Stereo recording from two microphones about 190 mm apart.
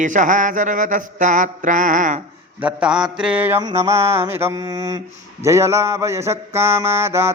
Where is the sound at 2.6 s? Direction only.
5° right (ahead or behind).